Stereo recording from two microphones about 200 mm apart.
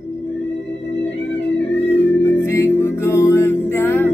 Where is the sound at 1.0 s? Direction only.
60° left (ahead or behind).